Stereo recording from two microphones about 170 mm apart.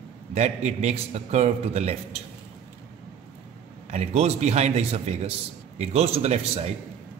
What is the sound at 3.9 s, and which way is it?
A man's voice, 40° right (ahead or behind).